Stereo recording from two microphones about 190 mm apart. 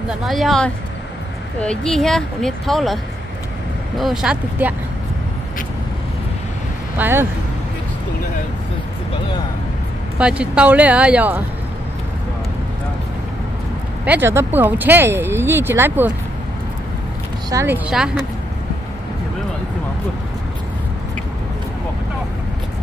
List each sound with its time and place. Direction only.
0.2 s speech: centre (ahead or behind)
4.0 s speech: 5° right (ahead or behind)
7.0 s speech: 10° right (ahead or behind)
10.1 s speech: 5° right (ahead or behind)
14.0 s speech: 10° right (ahead or behind)
17.5 s speech: 15° right (ahead or behind)
17.8 s speech: 5° right (ahead or behind)